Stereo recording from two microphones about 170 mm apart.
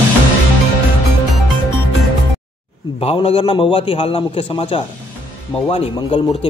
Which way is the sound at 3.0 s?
35° left (ahead or behind).